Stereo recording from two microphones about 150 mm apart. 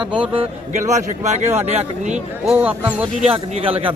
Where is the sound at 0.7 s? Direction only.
50° right (ahead or behind).